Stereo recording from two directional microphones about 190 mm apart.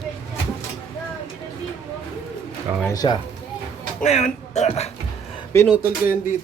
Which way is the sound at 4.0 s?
35° left (ahead or behind).